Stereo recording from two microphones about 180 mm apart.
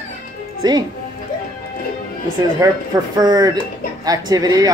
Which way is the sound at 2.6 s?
20° right (ahead or behind).